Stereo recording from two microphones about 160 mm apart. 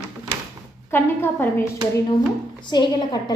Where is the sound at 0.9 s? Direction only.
15° left (ahead or behind).